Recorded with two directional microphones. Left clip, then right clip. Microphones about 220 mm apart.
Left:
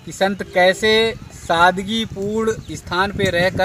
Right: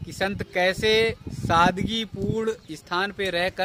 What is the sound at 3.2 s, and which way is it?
Speech, 25° right (ahead or behind).